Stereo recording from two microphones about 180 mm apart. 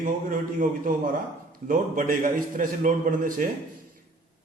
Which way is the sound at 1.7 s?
50° right (ahead or behind).